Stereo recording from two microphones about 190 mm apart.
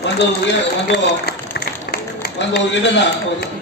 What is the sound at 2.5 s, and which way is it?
Speech, 70° left (ahead or behind).